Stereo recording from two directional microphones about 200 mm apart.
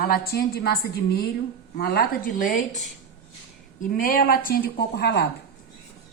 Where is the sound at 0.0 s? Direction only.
50° left (ahead or behind).